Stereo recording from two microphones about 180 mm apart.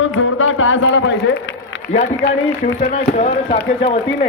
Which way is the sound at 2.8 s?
35° left (ahead or behind).